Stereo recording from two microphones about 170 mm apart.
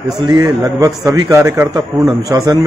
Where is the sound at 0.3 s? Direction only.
25° right (ahead or behind).